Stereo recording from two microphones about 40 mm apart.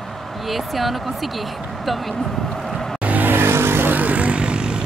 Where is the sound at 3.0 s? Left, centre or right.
Right.